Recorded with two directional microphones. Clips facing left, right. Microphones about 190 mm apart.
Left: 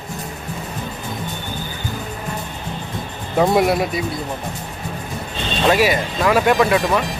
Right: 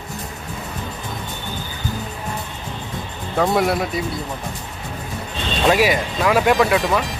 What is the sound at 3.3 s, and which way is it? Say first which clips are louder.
Speech: left 3 dB; 15° left (ahead or behind).